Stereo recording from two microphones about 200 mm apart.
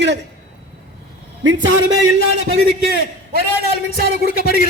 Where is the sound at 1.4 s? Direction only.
65° right (ahead or behind).